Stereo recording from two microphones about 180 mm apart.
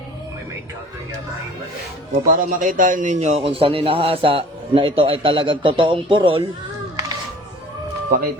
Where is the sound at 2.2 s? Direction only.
50° right (ahead or behind); by 6.4 s 30° right (ahead or behind).